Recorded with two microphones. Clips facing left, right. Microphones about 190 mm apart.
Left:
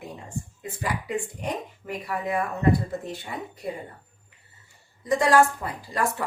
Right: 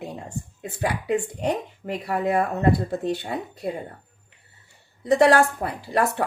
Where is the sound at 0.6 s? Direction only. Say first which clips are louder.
Right 5 dB; 65° right (ahead or behind).